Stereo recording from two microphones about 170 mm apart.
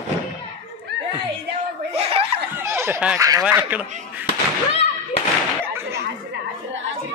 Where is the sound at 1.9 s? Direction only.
35° right (ahead or behind).